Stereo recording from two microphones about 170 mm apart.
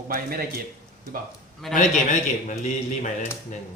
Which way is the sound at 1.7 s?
45° left (ahead or behind).